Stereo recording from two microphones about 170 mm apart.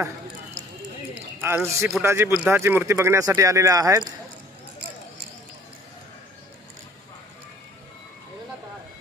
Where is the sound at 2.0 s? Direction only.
15° right (ahead or behind).